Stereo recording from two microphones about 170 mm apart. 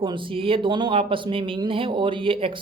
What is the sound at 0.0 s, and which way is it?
Speech, 30° right (ahead or behind).